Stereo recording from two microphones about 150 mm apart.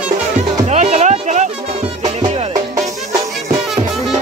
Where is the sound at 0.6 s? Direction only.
50° right (ahead or behind).